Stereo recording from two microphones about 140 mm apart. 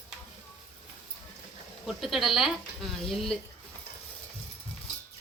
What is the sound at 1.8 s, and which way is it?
Speech, centre (ahead or behind).